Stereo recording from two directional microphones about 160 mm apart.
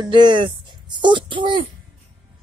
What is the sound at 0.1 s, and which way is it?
Speech, 30° right (ahead or behind).